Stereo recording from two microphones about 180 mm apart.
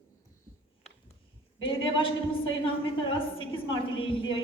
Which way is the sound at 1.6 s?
30° left (ahead or behind).